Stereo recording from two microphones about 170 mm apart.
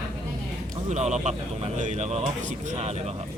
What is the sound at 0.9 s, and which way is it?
Speech, 45° right (ahead or behind).